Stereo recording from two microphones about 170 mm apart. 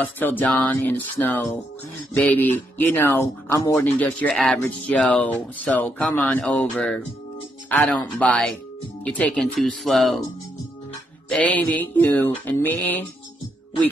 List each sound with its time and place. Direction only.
0.0 s speech: 10° left (ahead or behind)
11.2 s speech: 5° left (ahead or behind)